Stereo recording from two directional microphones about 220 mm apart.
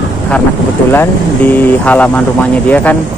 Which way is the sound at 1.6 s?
5° left (ahead or behind).